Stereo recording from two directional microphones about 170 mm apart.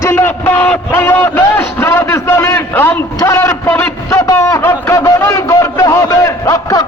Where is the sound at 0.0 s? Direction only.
15° left (ahead or behind).